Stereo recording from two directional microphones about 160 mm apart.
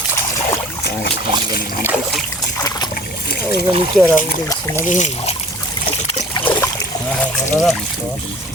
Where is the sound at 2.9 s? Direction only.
75° left (ahead or behind).